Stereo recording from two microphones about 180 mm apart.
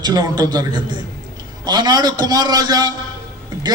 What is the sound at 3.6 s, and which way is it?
Music, 20° right (ahead or behind).